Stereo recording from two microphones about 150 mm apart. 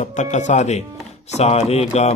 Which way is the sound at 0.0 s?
55° left (ahead or behind).